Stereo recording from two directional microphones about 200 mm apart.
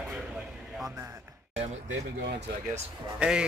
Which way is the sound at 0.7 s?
5° right (ahead or behind).